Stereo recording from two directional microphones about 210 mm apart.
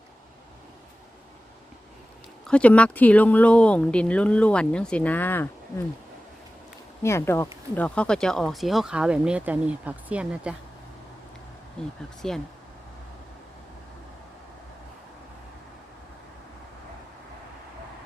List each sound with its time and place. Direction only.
2.5 s speech: 5° left (ahead or behind)
7.0 s speech: 15° left (ahead or behind); by 10.5 s 5° right (ahead or behind)
11.8 s speech: 5° left (ahead or behind)